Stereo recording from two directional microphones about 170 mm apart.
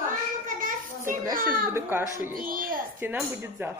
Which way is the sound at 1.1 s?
55° right (ahead or behind).